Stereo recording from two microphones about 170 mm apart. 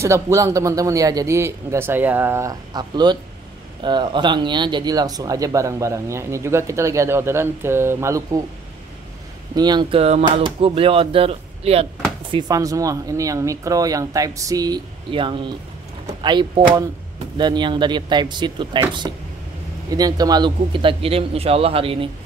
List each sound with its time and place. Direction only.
0.0 s a man's voice: 15° right (ahead or behind)
9.6 s a man's voice: 25° right (ahead or behind)
12.3 s a man's voice: 25° right (ahead or behind)